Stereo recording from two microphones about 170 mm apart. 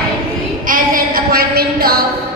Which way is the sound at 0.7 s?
55° right (ahead or behind).